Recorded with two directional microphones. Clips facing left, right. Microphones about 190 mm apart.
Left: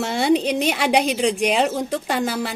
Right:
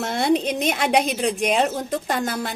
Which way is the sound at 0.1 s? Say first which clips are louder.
Left 2 dB; 5° left (ahead or behind).